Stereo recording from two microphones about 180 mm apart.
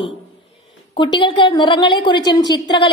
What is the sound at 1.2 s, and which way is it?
A woman's voice, 25° left (ahead or behind).